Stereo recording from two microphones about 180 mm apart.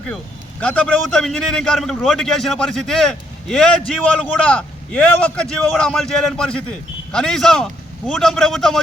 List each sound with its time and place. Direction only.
0.6 s a man's voice: 5° left (ahead or behind)